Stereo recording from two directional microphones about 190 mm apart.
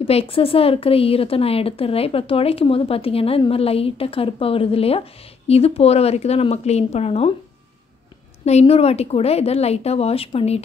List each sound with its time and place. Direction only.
0.0 s speech: 30° left (ahead or behind)
8.5 s speech: 35° left (ahead or behind)